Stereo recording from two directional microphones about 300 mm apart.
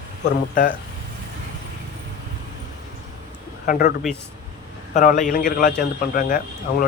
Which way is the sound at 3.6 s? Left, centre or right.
Left.